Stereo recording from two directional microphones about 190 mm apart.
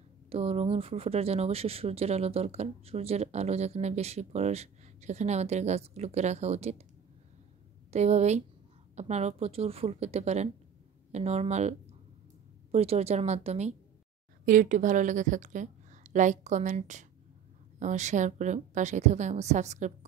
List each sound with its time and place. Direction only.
0.3 s speech: 30° right (ahead or behind)
7.9 s speech: 35° right (ahead or behind)
12.7 s speech: 35° right (ahead or behind)